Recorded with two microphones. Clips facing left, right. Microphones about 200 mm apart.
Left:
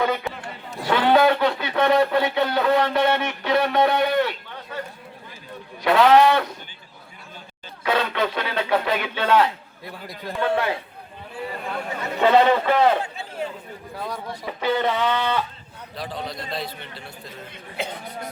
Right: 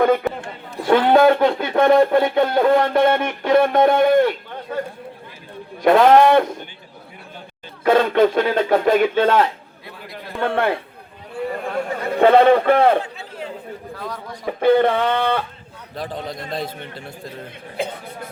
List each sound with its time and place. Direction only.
0.0 s speech: 55° right (ahead or behind)
5.8 s speech: 45° right (ahead or behind)
7.9 s a man's voice: 50° right (ahead or behind)
11.6 s a sound: 50° right (ahead or behind)
14.4 s speech: 55° right (ahead or behind)